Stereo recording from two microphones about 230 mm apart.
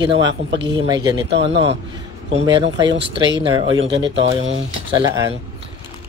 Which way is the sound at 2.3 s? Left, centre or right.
Right.